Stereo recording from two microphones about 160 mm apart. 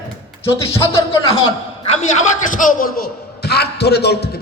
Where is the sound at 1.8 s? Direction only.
45° left (ahead or behind).